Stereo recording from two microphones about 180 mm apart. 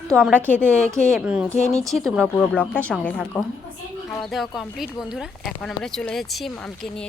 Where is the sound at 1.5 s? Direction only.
40° left (ahead or behind).